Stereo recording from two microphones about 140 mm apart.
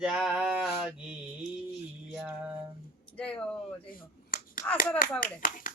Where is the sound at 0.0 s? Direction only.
5° right (ahead or behind).